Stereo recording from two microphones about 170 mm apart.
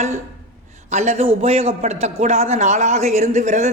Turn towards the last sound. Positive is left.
turn(degrees=-45)  # may be behind; listen again after turning